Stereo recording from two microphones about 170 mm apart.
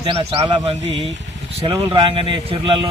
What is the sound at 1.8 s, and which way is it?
Speech, 30° right (ahead or behind).